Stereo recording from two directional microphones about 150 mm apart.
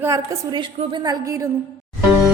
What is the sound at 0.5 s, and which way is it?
Speech, 30° right (ahead or behind).